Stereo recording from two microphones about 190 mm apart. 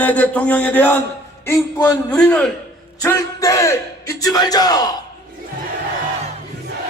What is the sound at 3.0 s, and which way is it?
Speech, 15° left (ahead or behind).